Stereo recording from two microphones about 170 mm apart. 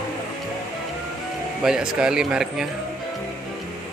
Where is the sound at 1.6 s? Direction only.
5° right (ahead or behind).